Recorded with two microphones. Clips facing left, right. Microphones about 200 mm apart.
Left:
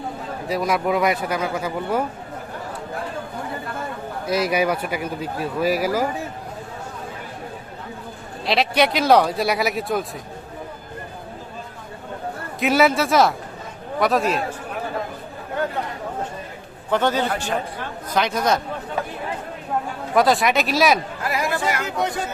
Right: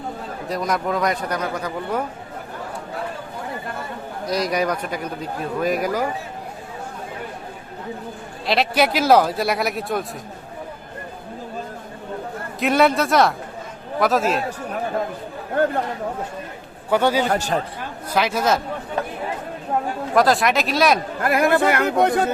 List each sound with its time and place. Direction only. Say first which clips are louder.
0.4 s speech: left 2 dB; 5° left (ahead or behind)
4.3 s speech: left 1 dB; 5° left (ahead or behind)
8.4 s speech: even; centre (ahead or behind)
12.5 s speech: even; centre (ahead or behind)
15.6 s speech: right 6 dB; 50° right (ahead or behind)
16.9 s a man's voice: right 2 dB; 10° right (ahead or behind)
17.2 s speech: right 3 dB; 40° right (ahead or behind)
18.1 s speech: right 1 dB; 5° right (ahead or behind)
20.1 s speech: even; centre (ahead or behind)
21.2 s speech: right 6 dB; 55° right (ahead or behind)